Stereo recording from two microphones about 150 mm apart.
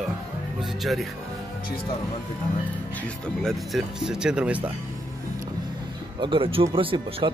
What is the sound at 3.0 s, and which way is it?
Speech, centre (ahead or behind).